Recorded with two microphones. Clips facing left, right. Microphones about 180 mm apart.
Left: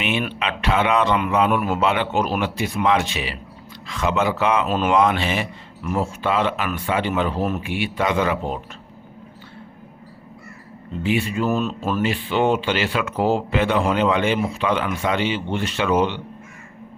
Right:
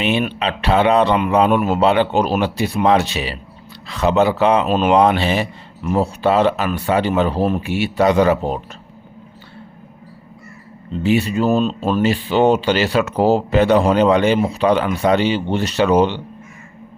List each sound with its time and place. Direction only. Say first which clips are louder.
0.0 s speech: right 5 dB; 30° right (ahead or behind)
4.7 s speech: right 5 dB; 25° right (ahead or behind)
4.9 s speech: right 3 dB; 35° right (ahead or behind)
11.0 s speech: right 5 dB; 35° right (ahead or behind)